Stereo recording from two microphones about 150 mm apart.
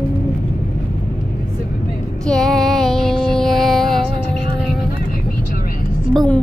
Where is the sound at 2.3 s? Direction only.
Centre (ahead or behind).